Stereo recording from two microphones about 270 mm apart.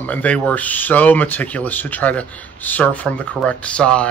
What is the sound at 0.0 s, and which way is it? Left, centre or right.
Speech, centre.